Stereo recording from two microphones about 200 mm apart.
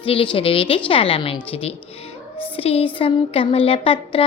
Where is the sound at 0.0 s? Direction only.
25° left (ahead or behind).